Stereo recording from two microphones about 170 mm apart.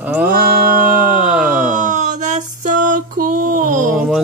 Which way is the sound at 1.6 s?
50° right (ahead or behind).